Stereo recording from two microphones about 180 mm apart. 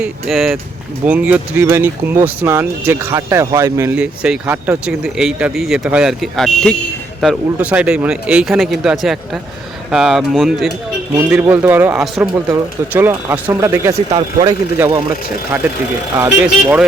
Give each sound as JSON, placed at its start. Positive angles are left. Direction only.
{"t": 0.0, "sound": "speech", "side_deg": 0}
{"t": 14.1, "sound": "speech", "side_deg": -30}
{"t": 16.1, "sound": "speech", "side_deg": -10}